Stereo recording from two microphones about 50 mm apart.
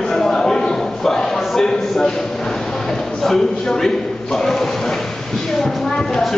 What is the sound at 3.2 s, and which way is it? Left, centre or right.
A man's voice, centre.